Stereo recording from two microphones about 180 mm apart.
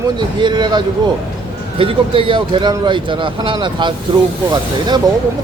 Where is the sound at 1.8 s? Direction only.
30° right (ahead or behind).